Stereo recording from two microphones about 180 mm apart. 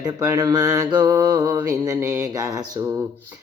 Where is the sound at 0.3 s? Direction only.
20° right (ahead or behind).